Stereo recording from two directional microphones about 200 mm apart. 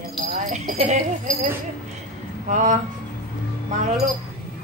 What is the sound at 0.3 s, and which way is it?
Jingle bell, 40° right (ahead or behind).